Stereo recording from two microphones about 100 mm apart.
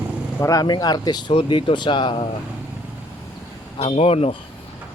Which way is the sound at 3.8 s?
80° left.